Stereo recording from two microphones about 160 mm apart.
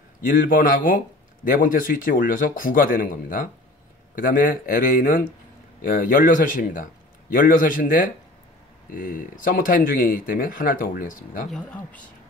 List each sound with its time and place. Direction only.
0.3 s speech: 60° left (ahead or behind)
11.5 s speech: 10° left (ahead or behind)